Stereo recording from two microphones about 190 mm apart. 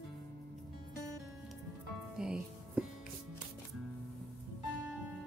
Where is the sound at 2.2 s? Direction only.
5° right (ahead or behind).